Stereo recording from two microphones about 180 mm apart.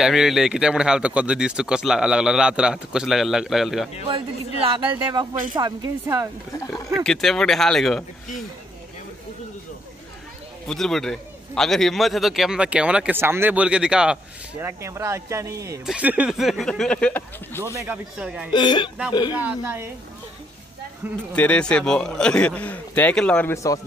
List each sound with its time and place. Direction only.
0.0 s a man's voice: centre (ahead or behind)
4.6 s speech: 25° right (ahead or behind)
6.9 s a man's voice: centre (ahead or behind)
10.7 s a man's voice: centre (ahead or behind); by 15.8 s 15° right (ahead or behind)
15.8 s a man's voice: 5° right (ahead or behind)
17.7 s speech: 10° right (ahead or behind)
18.5 s speech: 25° left (ahead or behind)
19.3 s speech: 10° right (ahead or behind)
21.3 s a man's voice: 5° left (ahead or behind)